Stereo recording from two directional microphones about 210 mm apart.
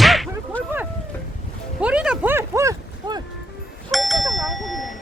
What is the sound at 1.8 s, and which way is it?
Speech, 5° right (ahead or behind).